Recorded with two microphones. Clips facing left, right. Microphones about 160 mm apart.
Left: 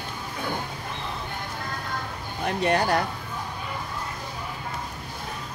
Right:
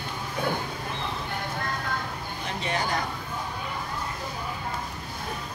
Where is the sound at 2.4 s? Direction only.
60° left (ahead or behind).